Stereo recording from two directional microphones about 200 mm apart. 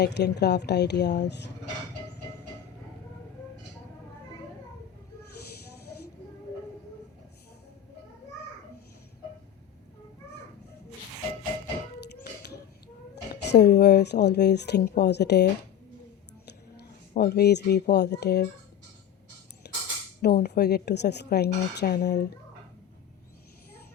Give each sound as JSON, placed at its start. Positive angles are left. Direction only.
{"t": 0.0, "sound": "speech", "side_deg": 55}
{"t": 12.2, "sound": "a sound", "side_deg": 55}
{"t": 13.4, "sound": "speech", "side_deg": 55}
{"t": 16.7, "sound": "speech", "side_deg": 55}
{"t": 19.6, "sound": "a sound", "side_deg": 55}
{"t": 20.2, "sound": "a woman's voice", "side_deg": 55}